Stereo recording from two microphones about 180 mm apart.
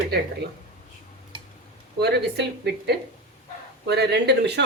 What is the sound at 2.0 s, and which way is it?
Speech, 65° right (ahead or behind).